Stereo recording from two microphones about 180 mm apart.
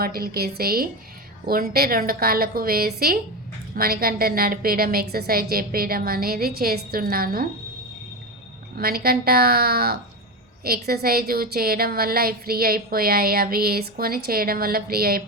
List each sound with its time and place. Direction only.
0.0 s a woman's voice: 55° right (ahead or behind)
8.7 s a woman's voice: 55° right (ahead or behind)